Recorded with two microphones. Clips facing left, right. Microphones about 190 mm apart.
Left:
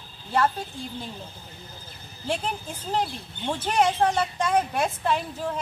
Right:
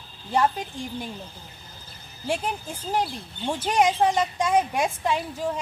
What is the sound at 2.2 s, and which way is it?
Speech, 10° right (ahead or behind).